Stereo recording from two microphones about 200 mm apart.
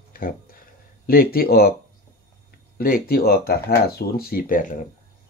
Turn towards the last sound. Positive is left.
turn(degrees=40)  # may be behind; listen again after turning